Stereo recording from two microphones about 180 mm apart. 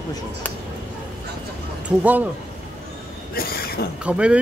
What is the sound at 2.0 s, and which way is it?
Speech, 10° right (ahead or behind).